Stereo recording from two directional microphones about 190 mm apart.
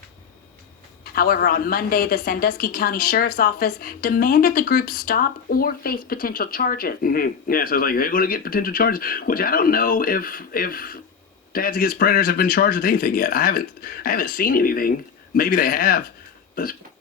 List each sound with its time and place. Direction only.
1.1 s a woman's voice: 50° left (ahead or behind)